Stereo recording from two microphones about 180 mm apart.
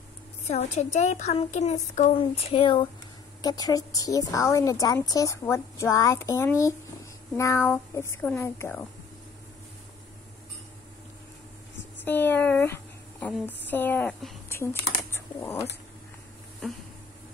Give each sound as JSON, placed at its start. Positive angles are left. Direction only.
{"t": 0.5, "sound": "a woman's voice", "side_deg": 40}
{"t": 12.0, "sound": "a woman's voice", "side_deg": 10}